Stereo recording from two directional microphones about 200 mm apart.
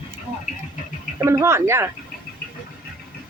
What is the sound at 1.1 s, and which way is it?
Speech, 15° right (ahead or behind).